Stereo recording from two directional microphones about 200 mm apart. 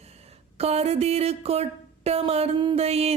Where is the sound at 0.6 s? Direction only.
30° right (ahead or behind).